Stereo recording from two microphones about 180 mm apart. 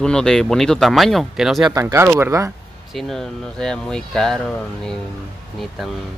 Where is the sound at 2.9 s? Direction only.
Centre (ahead or behind).